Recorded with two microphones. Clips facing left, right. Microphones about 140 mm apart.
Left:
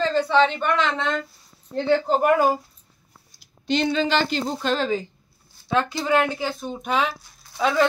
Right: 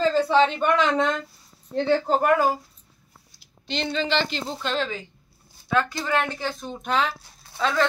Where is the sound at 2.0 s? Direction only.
20° left (ahead or behind).